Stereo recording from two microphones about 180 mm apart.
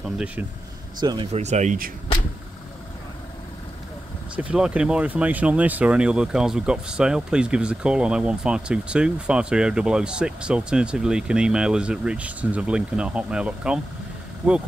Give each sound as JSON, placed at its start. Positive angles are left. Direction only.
{"t": 0.0, "sound": "speech", "side_deg": -5}
{"t": 0.9, "sound": "speech", "side_deg": -25}
{"t": 1.3, "sound": "speech", "side_deg": -40}
{"t": 4.4, "sound": "speech", "side_deg": -5}